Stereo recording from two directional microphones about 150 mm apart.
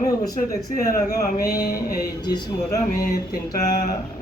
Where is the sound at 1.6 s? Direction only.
90° left.